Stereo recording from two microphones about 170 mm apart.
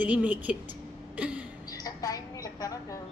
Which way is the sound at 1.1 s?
5° right (ahead or behind).